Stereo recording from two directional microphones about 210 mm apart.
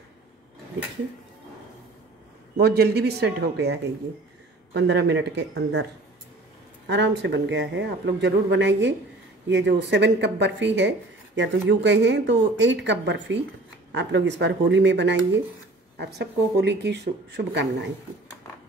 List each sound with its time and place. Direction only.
2.5 s speech: 50° right (ahead or behind)
4.7 s speech: 55° right (ahead or behind)
6.9 s speech: 55° right (ahead or behind)